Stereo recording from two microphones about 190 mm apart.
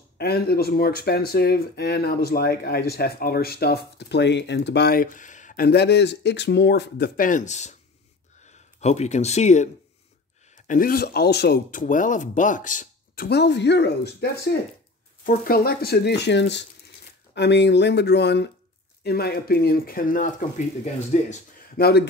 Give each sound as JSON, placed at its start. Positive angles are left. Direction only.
{"t": 0.2, "sound": "speech", "side_deg": 55}
{"t": 5.7, "sound": "speech", "side_deg": 60}
{"t": 21.7, "sound": "speech", "side_deg": 55}